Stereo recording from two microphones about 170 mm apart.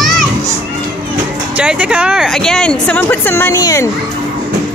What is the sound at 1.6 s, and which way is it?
Speech, 5° right (ahead or behind).